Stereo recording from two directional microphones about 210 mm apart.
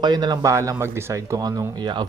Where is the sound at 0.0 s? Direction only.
20° right (ahead or behind).